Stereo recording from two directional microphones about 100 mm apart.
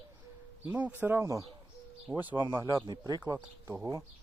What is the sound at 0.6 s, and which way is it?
Speech, 15° right (ahead or behind).